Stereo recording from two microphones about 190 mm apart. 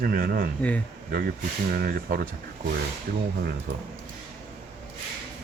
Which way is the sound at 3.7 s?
60° right (ahead or behind).